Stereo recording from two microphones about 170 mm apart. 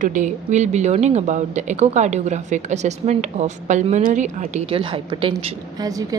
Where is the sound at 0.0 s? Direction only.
50° right (ahead or behind).